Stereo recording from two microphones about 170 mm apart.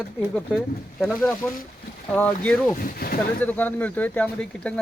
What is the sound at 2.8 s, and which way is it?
Speech, 60° left (ahead or behind).